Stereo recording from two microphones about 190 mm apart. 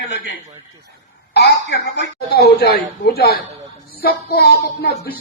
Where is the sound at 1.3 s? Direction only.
60° left (ahead or behind).